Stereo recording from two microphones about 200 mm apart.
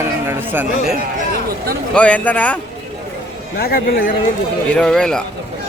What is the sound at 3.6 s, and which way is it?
Speech, 45° left (ahead or behind).